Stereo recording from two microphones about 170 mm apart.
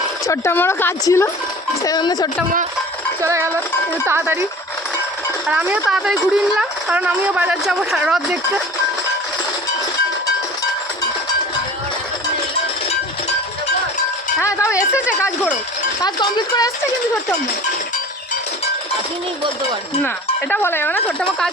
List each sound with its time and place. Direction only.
0.3 s speech: 15° left (ahead or behind)
3.2 s speech: 15° right (ahead or behind)
5.5 s speech: 5° right (ahead or behind)
14.3 s music: 15° left (ahead or behind)
14.8 s speech: 5° right (ahead or behind)
16.0 s speech: 25° left (ahead or behind)
20.5 s speech: 15° left (ahead or behind)